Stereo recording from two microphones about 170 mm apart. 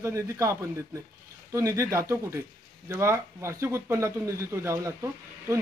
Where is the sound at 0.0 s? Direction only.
15° right (ahead or behind).